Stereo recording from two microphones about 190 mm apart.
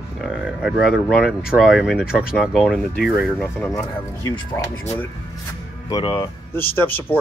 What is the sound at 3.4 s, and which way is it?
Speech, 10° left (ahead or behind).